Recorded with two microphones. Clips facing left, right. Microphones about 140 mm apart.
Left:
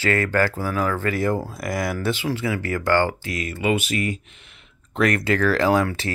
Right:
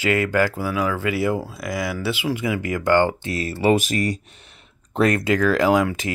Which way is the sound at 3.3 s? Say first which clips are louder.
Right 5 dB; 30° right (ahead or behind).